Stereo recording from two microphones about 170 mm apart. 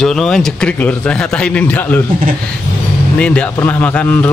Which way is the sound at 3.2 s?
5° left (ahead or behind).